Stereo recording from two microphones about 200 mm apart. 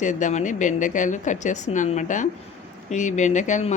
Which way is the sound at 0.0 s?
40° left (ahead or behind).